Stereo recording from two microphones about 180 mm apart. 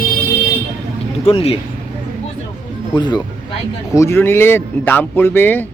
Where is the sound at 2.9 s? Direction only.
25° left (ahead or behind).